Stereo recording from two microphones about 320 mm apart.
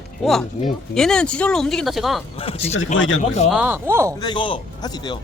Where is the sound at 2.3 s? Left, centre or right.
Centre.